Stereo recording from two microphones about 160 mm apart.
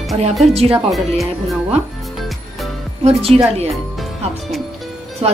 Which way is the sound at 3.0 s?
40° right (ahead or behind).